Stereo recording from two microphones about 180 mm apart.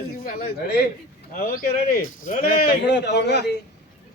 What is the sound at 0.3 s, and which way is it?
A man's voice, 60° left (ahead or behind).